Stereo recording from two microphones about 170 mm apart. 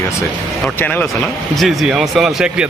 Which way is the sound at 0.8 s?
10° left (ahead or behind).